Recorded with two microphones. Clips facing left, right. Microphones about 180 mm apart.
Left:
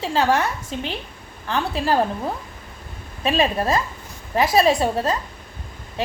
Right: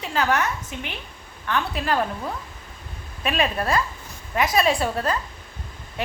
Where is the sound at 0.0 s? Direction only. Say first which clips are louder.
Left 3 dB; 30° left (ahead or behind).